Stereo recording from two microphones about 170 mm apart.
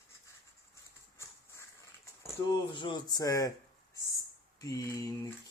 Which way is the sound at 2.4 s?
25° left (ahead or behind).